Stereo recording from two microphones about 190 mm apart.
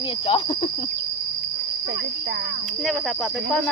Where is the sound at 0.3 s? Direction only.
25° left (ahead or behind).